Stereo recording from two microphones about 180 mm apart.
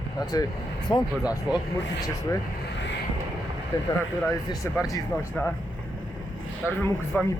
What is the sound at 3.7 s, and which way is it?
Speech, 20° left (ahead or behind).